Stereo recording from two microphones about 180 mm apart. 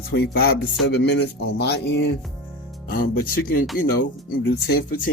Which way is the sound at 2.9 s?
55° left (ahead or behind).